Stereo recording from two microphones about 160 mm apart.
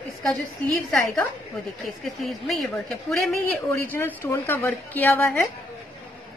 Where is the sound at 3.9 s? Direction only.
15° left (ahead or behind).